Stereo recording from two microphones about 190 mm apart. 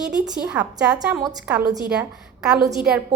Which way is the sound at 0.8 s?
5° right (ahead or behind).